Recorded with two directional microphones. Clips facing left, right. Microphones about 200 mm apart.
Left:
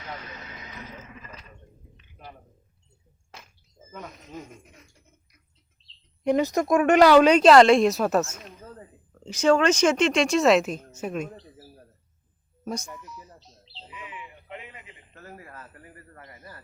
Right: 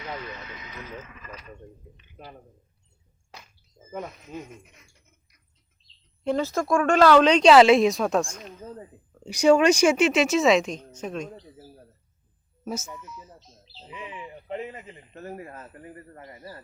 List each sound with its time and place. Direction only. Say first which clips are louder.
5.8 s bird: left 5 dB; 30° left (ahead or behind)
6.2 s speech: left 3 dB; 15° left (ahead or behind)
9.2 s speech: right 2 dB; 15° right (ahead or behind); by 11.3 s 10° left (ahead or behind)
12.6 s speech: even; 5° right (ahead or behind)
13.4 s bird: even; 30° left (ahead or behind)
13.8 s speech: right 4 dB; 30° right (ahead or behind)
15.1 s a man's voice: right 7 dB; 20° right (ahead or behind)